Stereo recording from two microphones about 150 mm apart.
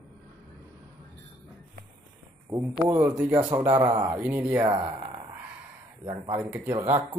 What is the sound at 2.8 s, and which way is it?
Speech, 10° right (ahead or behind).